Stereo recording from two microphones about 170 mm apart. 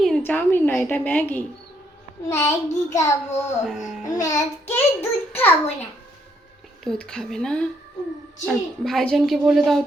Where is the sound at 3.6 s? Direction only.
Centre (ahead or behind).